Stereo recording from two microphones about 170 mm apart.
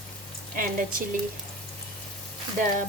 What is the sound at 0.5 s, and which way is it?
Speech, 55° right (ahead or behind).